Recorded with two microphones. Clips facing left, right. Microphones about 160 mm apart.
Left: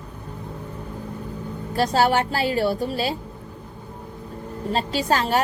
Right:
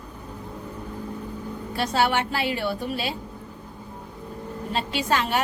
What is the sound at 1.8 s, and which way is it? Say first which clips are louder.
A woman's voice: left 4 dB; 40° left (ahead or behind).